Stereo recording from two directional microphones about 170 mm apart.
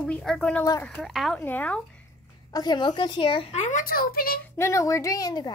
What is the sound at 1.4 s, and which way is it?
Speech, 10° left (ahead or behind).